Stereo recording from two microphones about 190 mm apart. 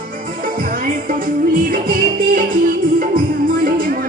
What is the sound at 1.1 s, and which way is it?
Music, 45° right (ahead or behind).